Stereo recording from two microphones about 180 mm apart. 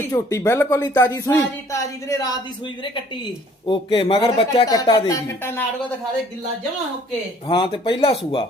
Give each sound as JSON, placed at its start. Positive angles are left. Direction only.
{"t": 0.0, "sound": "speech", "side_deg": 15}
{"t": 3.7, "sound": "speech", "side_deg": 30}
{"t": 7.4, "sound": "speech", "side_deg": 30}